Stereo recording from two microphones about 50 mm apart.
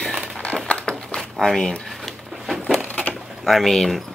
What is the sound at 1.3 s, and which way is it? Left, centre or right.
Speech, centre.